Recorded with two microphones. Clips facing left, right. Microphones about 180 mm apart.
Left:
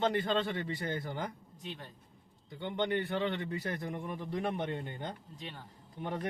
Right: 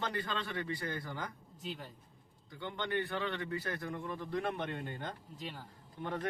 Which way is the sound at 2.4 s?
20° left (ahead or behind).